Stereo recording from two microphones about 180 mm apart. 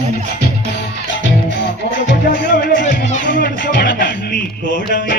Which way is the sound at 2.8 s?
45° left (ahead or behind).